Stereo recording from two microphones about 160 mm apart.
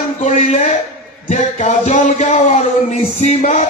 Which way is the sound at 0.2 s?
50° left (ahead or behind).